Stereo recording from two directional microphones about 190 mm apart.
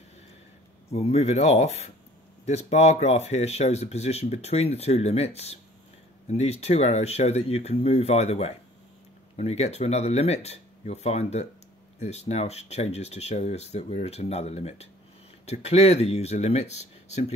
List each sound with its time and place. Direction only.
0.9 s speech: 35° left (ahead or behind)